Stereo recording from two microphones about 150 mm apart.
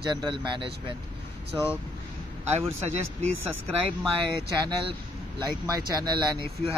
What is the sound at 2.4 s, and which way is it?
Speech, 45° right (ahead or behind).